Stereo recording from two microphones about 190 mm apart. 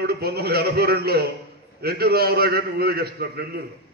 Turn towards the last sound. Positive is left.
turn(degrees=-55)  # may be behind; listen again after turning